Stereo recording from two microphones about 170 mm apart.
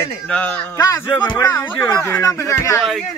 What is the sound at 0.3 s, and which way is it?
Speech, 10° left (ahead or behind).